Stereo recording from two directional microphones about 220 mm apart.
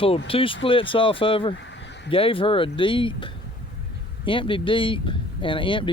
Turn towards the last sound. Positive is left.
turn(degrees=20)  # may be behind; listen again after turning